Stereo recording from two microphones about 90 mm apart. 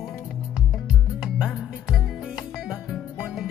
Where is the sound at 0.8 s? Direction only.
5° right (ahead or behind).